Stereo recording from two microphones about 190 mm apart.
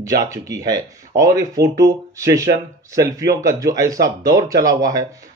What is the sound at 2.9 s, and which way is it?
Speech, 15° right (ahead or behind).